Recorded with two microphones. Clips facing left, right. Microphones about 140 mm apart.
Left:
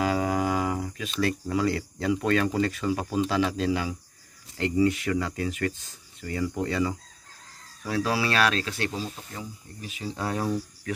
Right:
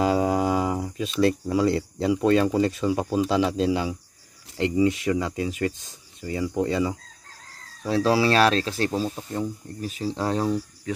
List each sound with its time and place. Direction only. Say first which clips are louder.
0.0 s speech: right 4 dB; 25° right (ahead or behind)